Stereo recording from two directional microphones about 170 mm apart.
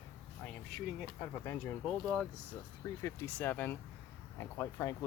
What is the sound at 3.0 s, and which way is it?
Speech, 10° left (ahead or behind).